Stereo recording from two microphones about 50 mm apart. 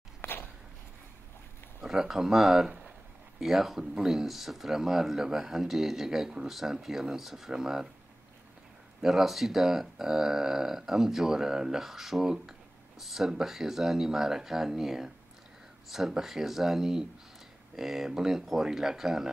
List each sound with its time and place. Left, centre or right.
0.2 s a sound: left
1.8 s speech: centre
9.0 s speech: centre
16.1 s speech: centre